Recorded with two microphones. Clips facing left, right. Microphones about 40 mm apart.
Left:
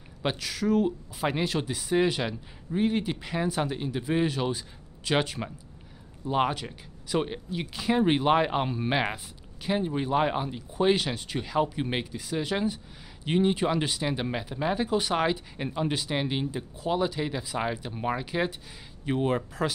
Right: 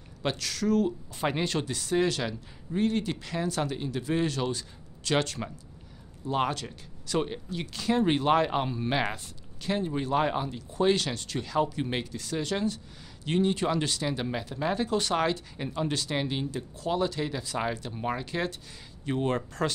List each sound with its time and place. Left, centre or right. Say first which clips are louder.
0.2 s speech: left 1 dB; centre